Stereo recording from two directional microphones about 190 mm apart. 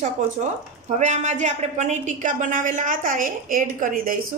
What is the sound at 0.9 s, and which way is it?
A woman's voice, 40° right (ahead or behind).